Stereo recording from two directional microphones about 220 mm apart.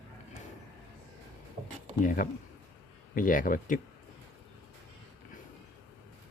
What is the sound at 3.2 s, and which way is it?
Speech, 40° left (ahead or behind).